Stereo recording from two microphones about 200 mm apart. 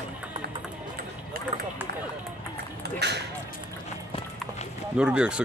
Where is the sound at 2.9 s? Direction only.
55° right (ahead or behind).